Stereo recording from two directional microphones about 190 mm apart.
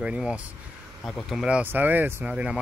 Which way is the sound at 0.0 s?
5° right (ahead or behind).